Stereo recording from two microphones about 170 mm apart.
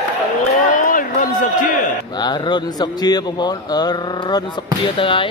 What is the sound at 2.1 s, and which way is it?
Speech, 25° left (ahead or behind).